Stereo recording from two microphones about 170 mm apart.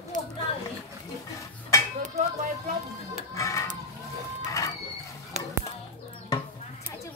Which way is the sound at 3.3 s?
20° left (ahead or behind).